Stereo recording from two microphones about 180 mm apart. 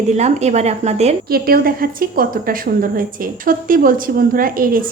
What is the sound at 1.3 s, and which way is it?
A woman's voice, 55° right (ahead or behind).